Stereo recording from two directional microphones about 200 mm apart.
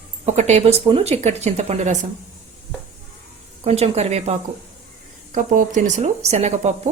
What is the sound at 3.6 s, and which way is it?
A woman's voice, 30° right (ahead or behind).